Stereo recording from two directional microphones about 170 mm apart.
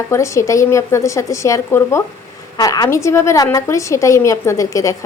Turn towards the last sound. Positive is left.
turn(degrees=20)  # may be behind; listen again after turning